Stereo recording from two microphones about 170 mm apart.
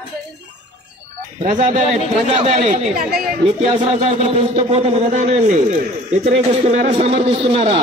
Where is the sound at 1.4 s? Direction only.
45° right (ahead or behind).